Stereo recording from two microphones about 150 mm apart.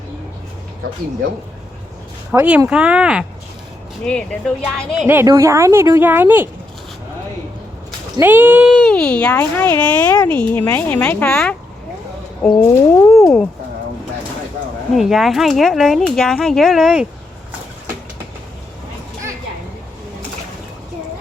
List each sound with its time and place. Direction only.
2.3 s a woman's voice: 10° right (ahead or behind)
4.0 s speech: 5° left (ahead or behind)
5.0 s a woman's voice: 15° right (ahead or behind)
8.2 s a woman's voice: 15° right (ahead or behind)
8.7 s speech: 5° left (ahead or behind)
14.9 s speech: centre (ahead or behind)